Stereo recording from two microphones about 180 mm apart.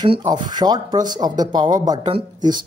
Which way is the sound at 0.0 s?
25° right (ahead or behind).